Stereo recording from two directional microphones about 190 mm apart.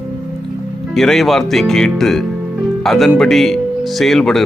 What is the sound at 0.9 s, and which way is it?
Speech, centre (ahead or behind).